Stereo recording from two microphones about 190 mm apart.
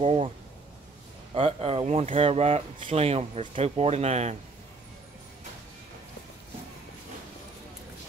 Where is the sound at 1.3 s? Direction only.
30° right (ahead or behind).